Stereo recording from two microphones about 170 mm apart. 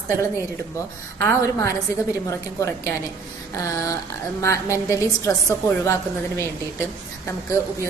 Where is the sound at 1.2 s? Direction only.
15° left (ahead or behind).